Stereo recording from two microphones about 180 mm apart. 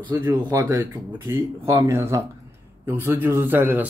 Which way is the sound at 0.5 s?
10° right (ahead or behind).